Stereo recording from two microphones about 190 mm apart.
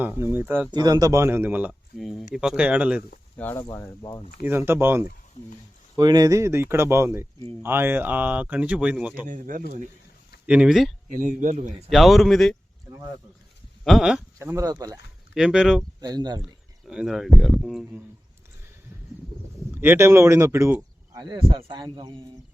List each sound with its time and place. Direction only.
0.0 s speech: 10° right (ahead or behind)
0.7 s speech: 20° right (ahead or behind)
3.3 s speech: 10° left (ahead or behind)
4.4 s speech: 10° right (ahead or behind)
9.2 s speech: 45° right (ahead or behind)
10.4 s speech: 5° right (ahead or behind)
11.1 s speech: 40° right (ahead or behind)
11.9 s speech: centre (ahead or behind)
13.8 s speech: centre (ahead or behind)
14.3 s speech: 15° right (ahead or behind)
15.4 s speech: 5° right (ahead or behind)
16.0 s speech: 20° right (ahead or behind)
16.4 s speech: 5° right (ahead or behind)
19.8 s speech: 10° right (ahead or behind)